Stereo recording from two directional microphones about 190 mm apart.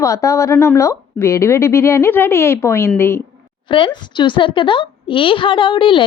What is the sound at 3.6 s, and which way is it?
A woman's voice, 25° left (ahead or behind).